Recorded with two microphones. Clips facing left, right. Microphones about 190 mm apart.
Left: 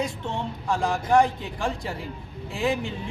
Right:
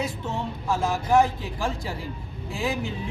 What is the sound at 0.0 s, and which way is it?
Speech, 5° right (ahead or behind).